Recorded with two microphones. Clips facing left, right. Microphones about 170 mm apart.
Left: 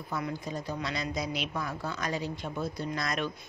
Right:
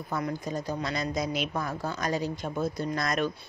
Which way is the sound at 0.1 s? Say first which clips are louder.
Right 3 dB; 45° right (ahead or behind).